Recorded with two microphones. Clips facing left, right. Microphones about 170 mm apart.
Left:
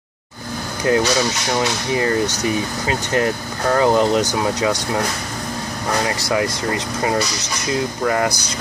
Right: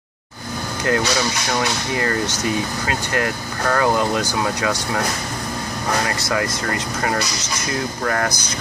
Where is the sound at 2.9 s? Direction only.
20° left (ahead or behind).